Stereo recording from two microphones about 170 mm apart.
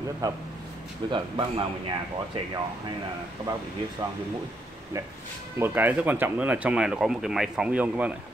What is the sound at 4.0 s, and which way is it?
Speech, 30° right (ahead or behind).